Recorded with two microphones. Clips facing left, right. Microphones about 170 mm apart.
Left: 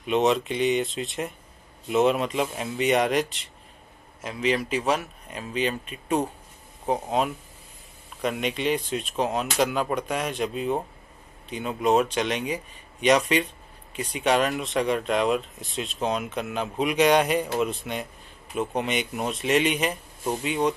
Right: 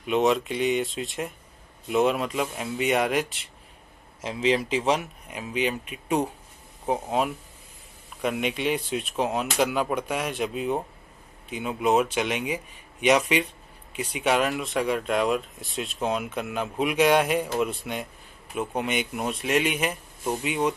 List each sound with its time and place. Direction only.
0.0 s speech: centre (ahead or behind)
4.2 s speech: 25° right (ahead or behind); by 20.7 s 10° right (ahead or behind)